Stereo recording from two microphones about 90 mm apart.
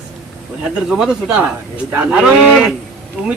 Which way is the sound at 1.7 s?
20° right (ahead or behind).